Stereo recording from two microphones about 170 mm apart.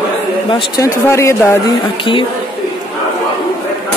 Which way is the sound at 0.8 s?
15° left (ahead or behind).